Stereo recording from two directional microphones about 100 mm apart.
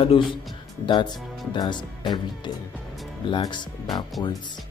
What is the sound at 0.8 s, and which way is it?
Speech, 50° left (ahead or behind).